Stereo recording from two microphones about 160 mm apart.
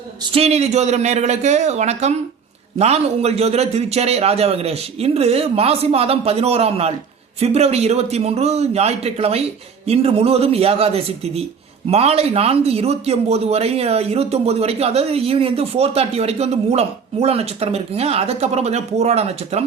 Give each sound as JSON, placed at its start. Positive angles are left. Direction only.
{"t": 0.3, "sound": "a man's voice", "side_deg": -40}